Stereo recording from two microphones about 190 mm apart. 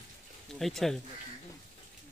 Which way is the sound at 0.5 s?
Centre (ahead or behind).